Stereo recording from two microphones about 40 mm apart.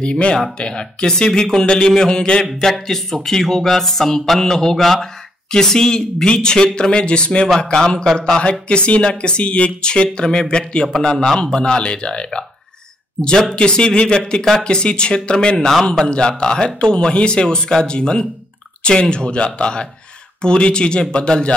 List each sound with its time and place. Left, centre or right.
0.0 s speech: left
2.6 s speech: centre; by 7.4 s left
7.4 s speech: centre
13.6 s speech: left
15.5 s speech: centre